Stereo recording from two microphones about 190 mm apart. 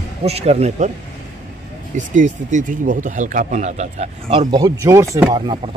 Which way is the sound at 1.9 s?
40° right (ahead or behind).